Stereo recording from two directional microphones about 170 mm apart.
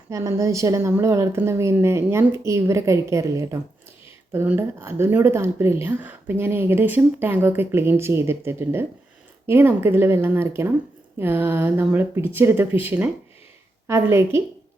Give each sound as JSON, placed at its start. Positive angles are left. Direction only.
{"t": 0.1, "sound": "speech", "side_deg": -15}